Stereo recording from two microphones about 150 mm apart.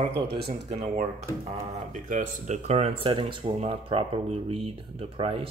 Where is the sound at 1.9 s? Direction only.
55° right (ahead or behind).